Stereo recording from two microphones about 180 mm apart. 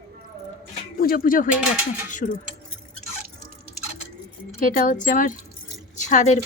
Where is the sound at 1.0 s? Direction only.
55° left (ahead or behind).